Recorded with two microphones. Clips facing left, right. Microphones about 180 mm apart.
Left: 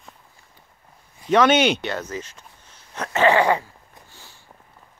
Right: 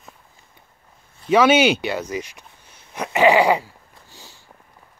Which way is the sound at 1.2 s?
5° right (ahead or behind).